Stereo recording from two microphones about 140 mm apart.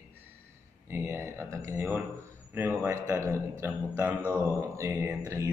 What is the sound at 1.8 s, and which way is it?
Speech, 10° right (ahead or behind).